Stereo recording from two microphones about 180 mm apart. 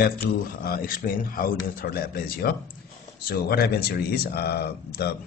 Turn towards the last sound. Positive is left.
turn(degrees=60)  # may be behind; listen again after turning